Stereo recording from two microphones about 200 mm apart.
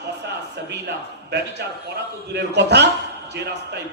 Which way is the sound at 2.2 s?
55° right (ahead or behind).